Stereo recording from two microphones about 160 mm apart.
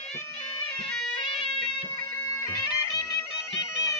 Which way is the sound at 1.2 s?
35° left (ahead or behind).